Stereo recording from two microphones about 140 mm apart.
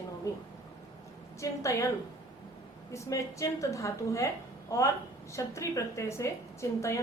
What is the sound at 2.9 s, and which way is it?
A woman's voice, 20° left (ahead or behind).